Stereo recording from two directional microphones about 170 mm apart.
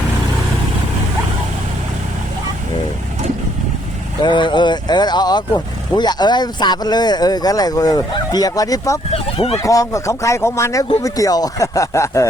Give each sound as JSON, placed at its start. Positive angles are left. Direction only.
{"t": 4.2, "sound": "speech", "side_deg": 25}
{"t": 9.1, "sound": "speech", "side_deg": 35}
{"t": 9.6, "sound": "speech", "side_deg": 20}